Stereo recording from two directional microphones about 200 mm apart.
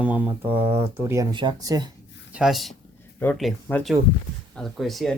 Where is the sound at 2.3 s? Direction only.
Centre (ahead or behind).